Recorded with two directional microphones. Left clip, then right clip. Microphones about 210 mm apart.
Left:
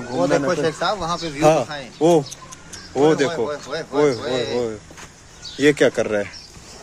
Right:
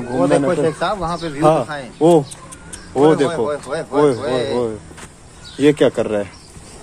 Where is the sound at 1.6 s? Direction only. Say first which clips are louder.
Right 3 dB; 10° right (ahead or behind).